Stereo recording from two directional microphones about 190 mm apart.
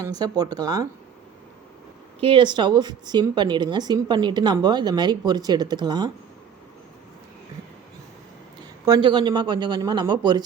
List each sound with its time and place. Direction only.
0.0 s a woman's voice: 20° right (ahead or behind)
2.2 s a woman's voice: 25° right (ahead or behind)
8.8 s a woman's voice: 20° right (ahead or behind)